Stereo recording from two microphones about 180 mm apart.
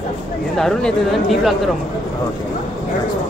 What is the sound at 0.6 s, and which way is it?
Speech, centre (ahead or behind).